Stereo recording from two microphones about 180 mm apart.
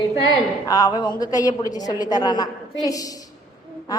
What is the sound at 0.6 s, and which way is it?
A woman's voice, 20° left (ahead or behind).